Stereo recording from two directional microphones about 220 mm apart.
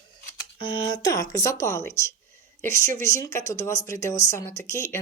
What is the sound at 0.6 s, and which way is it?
Speech, 20° left (ahead or behind).